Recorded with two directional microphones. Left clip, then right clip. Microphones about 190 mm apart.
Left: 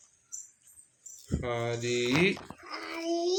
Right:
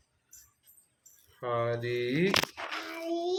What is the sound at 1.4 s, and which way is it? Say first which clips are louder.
Speech: right 2 dB; 30° left (ahead or behind).